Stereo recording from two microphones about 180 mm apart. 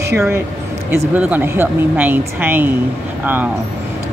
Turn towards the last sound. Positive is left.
turn(degrees=-10)  # may be behind; listen again after turning